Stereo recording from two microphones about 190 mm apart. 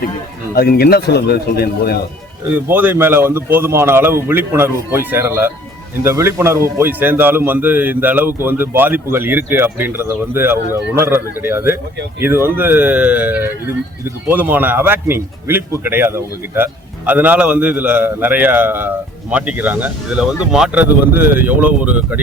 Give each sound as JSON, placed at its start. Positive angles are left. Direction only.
{"t": 0.5, "sound": "speech", "side_deg": 50}
{"t": 2.5, "sound": "a man's voice", "side_deg": -10}